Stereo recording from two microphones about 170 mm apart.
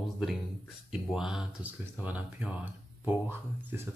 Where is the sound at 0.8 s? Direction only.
5° right (ahead or behind).